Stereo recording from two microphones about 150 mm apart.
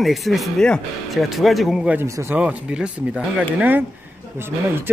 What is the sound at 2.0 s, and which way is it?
Speech, 20° right (ahead or behind).